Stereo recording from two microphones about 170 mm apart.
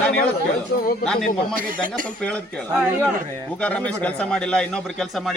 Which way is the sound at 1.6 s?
55° right (ahead or behind).